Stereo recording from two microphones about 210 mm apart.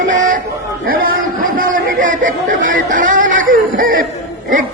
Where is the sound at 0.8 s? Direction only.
45° right (ahead or behind).